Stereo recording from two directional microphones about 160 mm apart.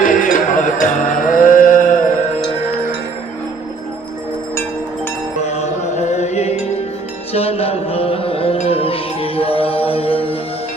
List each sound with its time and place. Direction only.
0.0 s music: 55° left (ahead or behind)
5.5 s music: 45° left (ahead or behind)